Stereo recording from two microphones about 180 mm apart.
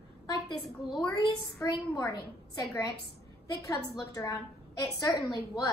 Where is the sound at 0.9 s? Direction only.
20° left (ahead or behind).